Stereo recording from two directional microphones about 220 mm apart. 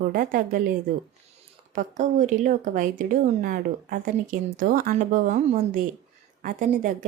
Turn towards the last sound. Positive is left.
turn(degrees=-35)  # may be behind; listen again after turning